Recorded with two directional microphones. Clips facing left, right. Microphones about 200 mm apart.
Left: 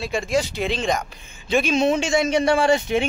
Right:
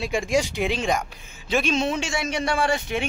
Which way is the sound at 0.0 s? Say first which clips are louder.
Even; 15° right (ahead or behind).